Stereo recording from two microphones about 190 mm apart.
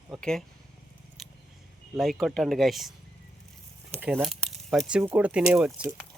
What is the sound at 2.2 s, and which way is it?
Speech, centre (ahead or behind).